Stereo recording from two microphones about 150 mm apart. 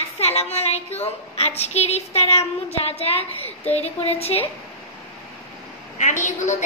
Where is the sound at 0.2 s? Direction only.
45° left (ahead or behind).